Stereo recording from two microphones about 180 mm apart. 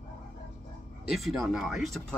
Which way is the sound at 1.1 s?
Centre (ahead or behind).